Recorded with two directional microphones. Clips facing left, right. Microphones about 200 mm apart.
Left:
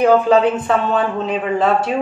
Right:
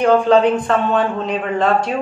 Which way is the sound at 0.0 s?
5° left (ahead or behind).